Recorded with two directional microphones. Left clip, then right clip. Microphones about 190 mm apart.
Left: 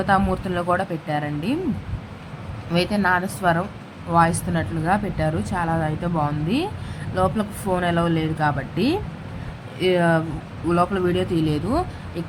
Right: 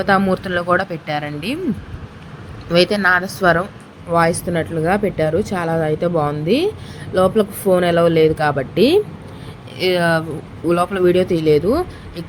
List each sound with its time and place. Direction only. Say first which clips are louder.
0.0 s a woman's voice: right 4 dB; 15° right (ahead or behind)
2.7 s a woman's voice: right 7 dB; 15° right (ahead or behind)